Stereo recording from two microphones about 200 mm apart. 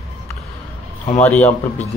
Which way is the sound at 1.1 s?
10° left (ahead or behind).